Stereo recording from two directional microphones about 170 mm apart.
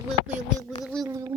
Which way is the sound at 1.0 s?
20° right (ahead or behind).